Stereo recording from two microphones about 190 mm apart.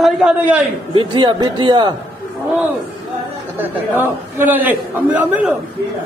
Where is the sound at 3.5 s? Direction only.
10° right (ahead or behind).